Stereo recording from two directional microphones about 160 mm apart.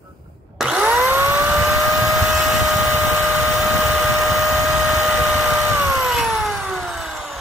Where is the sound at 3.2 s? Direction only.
15° right (ahead or behind).